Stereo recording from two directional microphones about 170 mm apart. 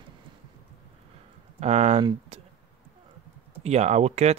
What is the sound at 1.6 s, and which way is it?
Speech, 40° right (ahead or behind).